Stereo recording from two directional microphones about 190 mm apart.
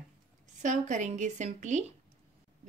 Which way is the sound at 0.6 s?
40° right (ahead or behind).